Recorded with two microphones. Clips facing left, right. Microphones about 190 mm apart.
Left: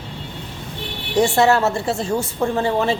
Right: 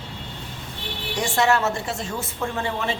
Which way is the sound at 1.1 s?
35° left (ahead or behind).